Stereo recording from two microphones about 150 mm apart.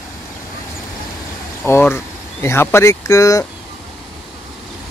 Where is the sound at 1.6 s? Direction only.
15° left (ahead or behind).